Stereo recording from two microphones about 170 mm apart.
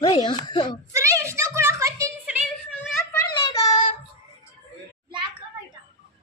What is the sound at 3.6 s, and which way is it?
Child singing, 30° left (ahead or behind).